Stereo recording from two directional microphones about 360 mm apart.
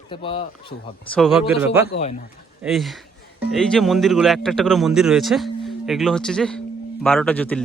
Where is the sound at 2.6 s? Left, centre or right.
Centre.